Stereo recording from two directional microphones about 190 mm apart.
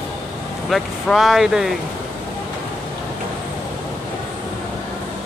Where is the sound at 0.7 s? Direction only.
Centre (ahead or behind).